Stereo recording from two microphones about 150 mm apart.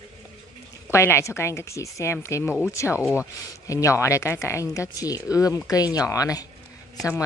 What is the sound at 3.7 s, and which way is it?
Speech, 20° left (ahead or behind).